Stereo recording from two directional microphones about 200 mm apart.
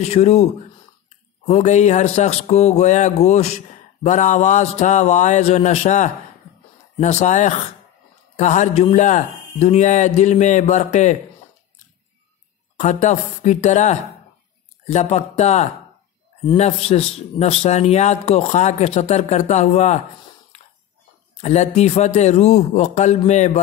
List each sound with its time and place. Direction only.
0.0 s a man's voice: 30° left (ahead or behind)
12.7 s a man's voice: 35° left (ahead or behind)
21.4 s a man's voice: 35° left (ahead or behind)